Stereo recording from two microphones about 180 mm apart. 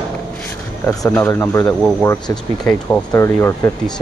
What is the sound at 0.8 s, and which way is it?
Speech, 10° left (ahead or behind).